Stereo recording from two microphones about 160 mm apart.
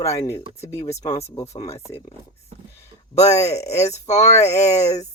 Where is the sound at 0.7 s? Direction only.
40° left (ahead or behind).